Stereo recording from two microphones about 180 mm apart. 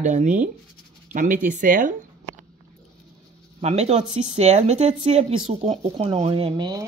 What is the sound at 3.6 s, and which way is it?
Speech, 35° right (ahead or behind).